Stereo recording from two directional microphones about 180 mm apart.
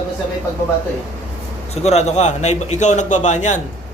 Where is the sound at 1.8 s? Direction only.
35° left (ahead or behind).